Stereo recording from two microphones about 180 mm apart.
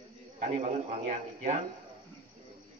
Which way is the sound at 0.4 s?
40° right (ahead or behind).